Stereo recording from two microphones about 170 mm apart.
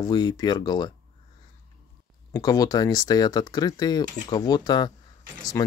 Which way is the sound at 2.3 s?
20° left (ahead or behind).